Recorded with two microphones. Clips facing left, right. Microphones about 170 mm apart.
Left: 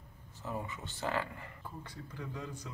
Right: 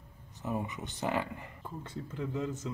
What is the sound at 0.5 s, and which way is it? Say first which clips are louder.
Speech: right 5 dB; 20° right (ahead or behind).